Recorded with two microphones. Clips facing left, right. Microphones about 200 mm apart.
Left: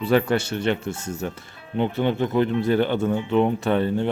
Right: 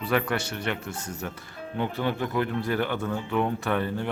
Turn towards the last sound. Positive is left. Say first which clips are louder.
# left 6 dB
turn(degrees=25)  # may be behind; listen again after turning